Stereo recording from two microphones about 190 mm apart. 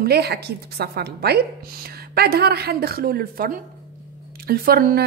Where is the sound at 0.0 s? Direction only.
60° right (ahead or behind).